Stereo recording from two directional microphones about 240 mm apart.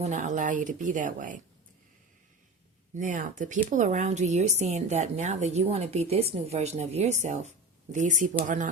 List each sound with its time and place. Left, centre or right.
0.0 s speech: right
2.9 s a woman's voice: right